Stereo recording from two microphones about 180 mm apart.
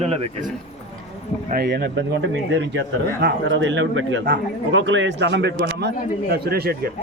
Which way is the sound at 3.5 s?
90° right.